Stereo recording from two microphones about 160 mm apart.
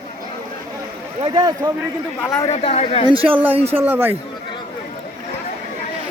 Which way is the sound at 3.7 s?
15° right (ahead or behind).